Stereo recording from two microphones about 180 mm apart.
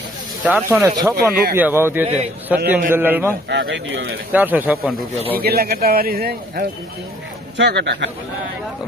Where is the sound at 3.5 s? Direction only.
75° right (ahead or behind).